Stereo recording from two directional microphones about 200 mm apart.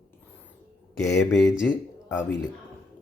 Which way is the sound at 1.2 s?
Centre (ahead or behind).